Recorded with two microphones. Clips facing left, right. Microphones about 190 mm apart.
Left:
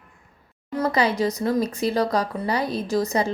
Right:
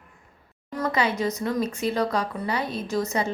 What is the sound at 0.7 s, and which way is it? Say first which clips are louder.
Speech: left 3 dB; 35° left (ahead or behind).